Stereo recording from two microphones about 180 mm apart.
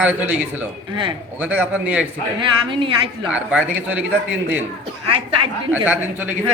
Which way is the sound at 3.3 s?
5° right (ahead or behind).